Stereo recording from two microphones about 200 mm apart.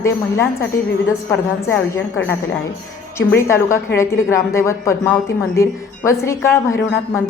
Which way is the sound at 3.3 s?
15° left (ahead or behind).